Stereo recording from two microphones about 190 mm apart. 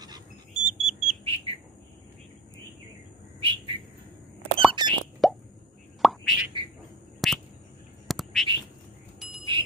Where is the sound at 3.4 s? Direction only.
30° right (ahead or behind).